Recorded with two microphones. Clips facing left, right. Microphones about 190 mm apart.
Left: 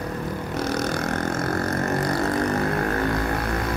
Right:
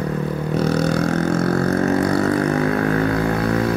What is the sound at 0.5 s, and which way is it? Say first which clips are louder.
Vehicle: right 7 dB; 65° right (ahead or behind).